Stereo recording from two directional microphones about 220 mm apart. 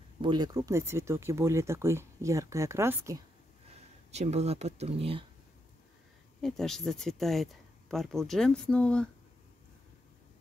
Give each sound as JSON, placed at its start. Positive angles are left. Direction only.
{"t": 0.2, "sound": "speech", "side_deg": -20}
{"t": 3.7, "sound": "speech", "side_deg": -30}
{"t": 6.4, "sound": "speech", "side_deg": 0}